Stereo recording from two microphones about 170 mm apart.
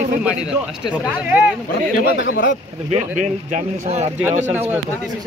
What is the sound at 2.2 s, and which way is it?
Speech, 60° left (ahead or behind).